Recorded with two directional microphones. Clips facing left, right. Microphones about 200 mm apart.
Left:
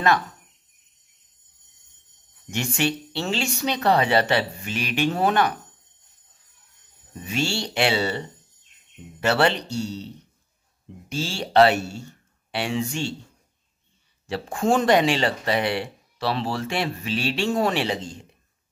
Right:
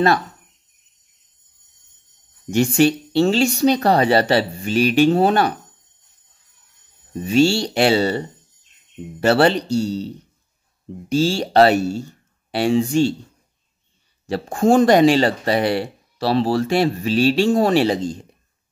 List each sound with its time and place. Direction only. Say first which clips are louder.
2.5 s speech: right 10 dB; 35° right (ahead or behind)
7.2 s speech: right 11 dB; 35° right (ahead or behind)
14.2 s speech: right 6 dB; 40° right (ahead or behind)